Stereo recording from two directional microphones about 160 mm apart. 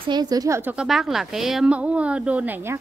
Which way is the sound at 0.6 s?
10° right (ahead or behind).